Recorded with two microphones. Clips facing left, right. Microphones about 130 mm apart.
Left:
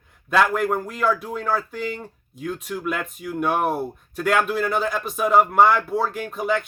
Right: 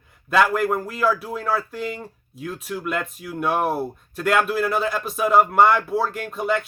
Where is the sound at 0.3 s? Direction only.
5° right (ahead or behind).